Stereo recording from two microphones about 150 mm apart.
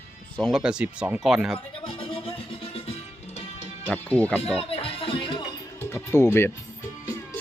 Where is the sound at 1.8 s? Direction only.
35° left (ahead or behind).